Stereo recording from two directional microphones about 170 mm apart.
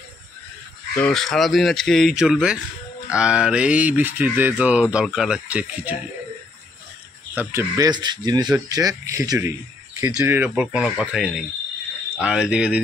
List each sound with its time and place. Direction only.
0.9 s speech: 5° left (ahead or behind)
7.3 s speech: 15° right (ahead or behind)